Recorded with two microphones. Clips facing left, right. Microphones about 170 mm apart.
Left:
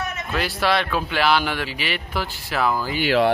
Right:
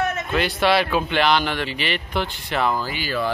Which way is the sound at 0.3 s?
Centre (ahead or behind).